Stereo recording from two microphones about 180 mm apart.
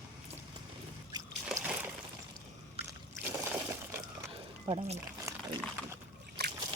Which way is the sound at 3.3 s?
15° right (ahead or behind).